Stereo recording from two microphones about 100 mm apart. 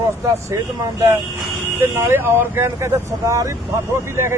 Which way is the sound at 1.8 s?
25° right (ahead or behind).